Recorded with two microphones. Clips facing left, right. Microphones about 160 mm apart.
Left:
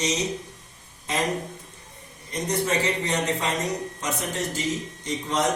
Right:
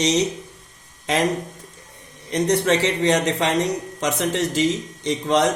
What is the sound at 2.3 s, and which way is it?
A man's voice, 80° right.